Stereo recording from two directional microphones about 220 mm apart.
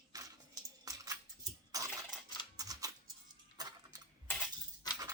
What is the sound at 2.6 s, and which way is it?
Typewriter, 15° right (ahead or behind).